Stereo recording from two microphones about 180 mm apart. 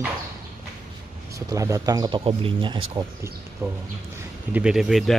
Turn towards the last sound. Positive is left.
turn(degrees=0)  # may be behind; listen again after turning